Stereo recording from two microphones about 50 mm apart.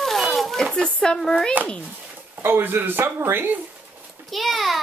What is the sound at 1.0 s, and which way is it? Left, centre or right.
Speech, centre.